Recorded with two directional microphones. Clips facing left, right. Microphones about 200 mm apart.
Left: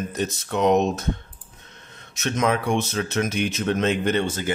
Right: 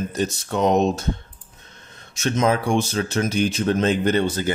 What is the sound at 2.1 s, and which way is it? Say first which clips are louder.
Speech: right 2 dB; 30° right (ahead or behind).